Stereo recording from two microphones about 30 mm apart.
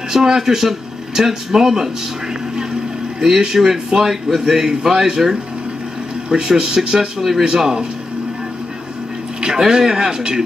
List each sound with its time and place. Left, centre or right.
0.1 s speech: centre
3.2 s speech: centre
4.6 s speech: right
6.2 s speech: right
7.2 s speech: centre
7.5 s speech: centre
9.6 s speech: centre